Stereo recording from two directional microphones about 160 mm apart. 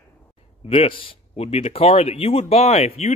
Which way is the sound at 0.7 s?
35° left (ahead or behind).